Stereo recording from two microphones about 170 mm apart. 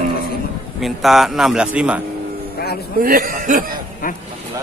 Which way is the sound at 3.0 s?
55° right (ahead or behind).